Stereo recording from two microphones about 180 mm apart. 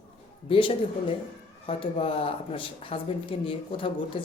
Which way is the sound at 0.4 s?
30° left (ahead or behind).